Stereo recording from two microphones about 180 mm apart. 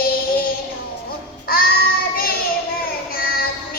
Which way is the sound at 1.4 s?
55° left (ahead or behind).